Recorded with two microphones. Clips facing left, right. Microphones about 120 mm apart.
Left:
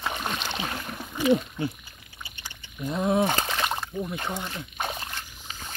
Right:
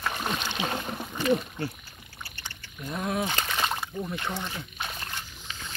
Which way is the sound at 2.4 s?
15° left (ahead or behind).